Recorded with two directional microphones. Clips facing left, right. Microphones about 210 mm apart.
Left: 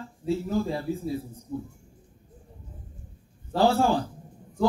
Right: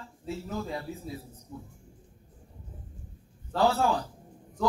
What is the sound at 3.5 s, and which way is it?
Speech, 30° left (ahead or behind).